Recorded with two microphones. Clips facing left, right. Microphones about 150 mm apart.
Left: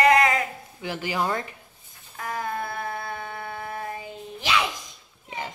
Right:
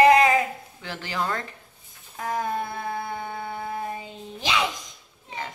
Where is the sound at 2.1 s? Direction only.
20° right (ahead or behind).